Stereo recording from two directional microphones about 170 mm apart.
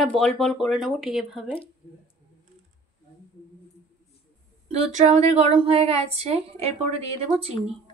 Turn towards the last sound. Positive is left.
turn(degrees=-35)  # may be behind; listen again after turning